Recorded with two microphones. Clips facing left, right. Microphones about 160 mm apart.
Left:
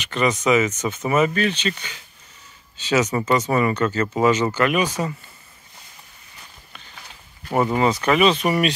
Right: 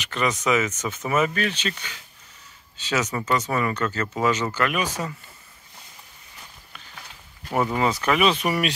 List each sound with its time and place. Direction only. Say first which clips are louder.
0.0 s speech: left 4 dB; centre (ahead or behind)
3.1 s speech: left 5 dB; 15° left (ahead or behind)
7.5 s speech: left 3 dB; 5° left (ahead or behind)